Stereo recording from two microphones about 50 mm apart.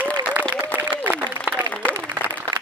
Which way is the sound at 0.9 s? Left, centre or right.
Right.